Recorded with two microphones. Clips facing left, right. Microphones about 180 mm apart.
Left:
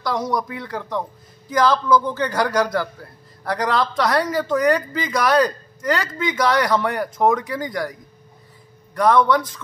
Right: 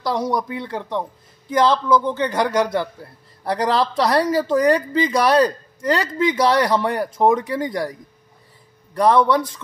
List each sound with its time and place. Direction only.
0.0 s a man's voice: 30° right (ahead or behind)